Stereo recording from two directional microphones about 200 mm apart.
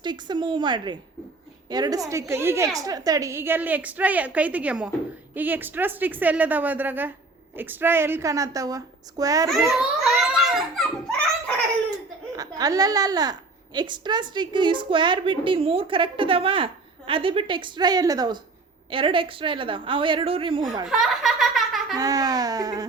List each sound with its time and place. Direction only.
0.0 s a woman's voice: 20° right (ahead or behind)
9.5 s a child's voice: centre (ahead or behind)
12.4 s a woman's voice: 20° right (ahead or behind)
20.8 s laughter: centre (ahead or behind)
21.9 s a woman's voice: 20° right (ahead or behind)